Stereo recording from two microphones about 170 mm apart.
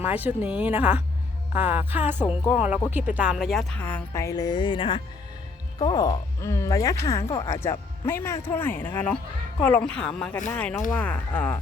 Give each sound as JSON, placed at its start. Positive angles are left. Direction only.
{"t": 0.0, "sound": "a woman's voice", "side_deg": -10}